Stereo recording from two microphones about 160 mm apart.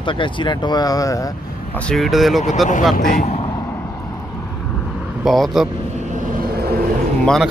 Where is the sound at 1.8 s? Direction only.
5° left (ahead or behind).